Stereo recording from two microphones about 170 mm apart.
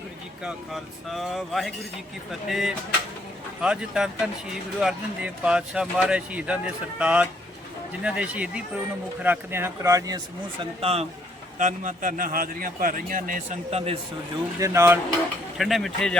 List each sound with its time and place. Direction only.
0.4 s speech: centre (ahead or behind); by 10.2 s 20° right (ahead or behind)
10.6 s speech: 35° right (ahead or behind)
11.5 s a man's voice: 50° right (ahead or behind)
14.6 s speech: 15° right (ahead or behind)
15.5 s speech: centre (ahead or behind)